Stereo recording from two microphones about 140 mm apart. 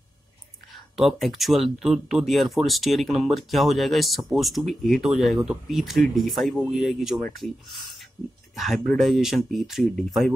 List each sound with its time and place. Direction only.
0.9 s speech: centre (ahead or behind)
8.5 s speech: centre (ahead or behind)